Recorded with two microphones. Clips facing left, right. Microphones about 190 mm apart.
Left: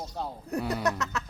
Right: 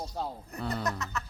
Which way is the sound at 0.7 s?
70° left (ahead or behind).